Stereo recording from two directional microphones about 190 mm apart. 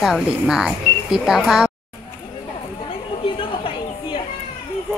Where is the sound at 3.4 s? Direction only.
25° left (ahead or behind).